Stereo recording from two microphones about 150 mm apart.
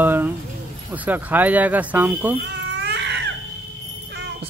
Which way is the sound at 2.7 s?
90° right.